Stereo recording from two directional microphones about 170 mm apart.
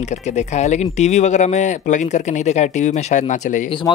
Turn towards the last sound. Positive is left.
turn(degrees=30)  # may be behind; listen again after turning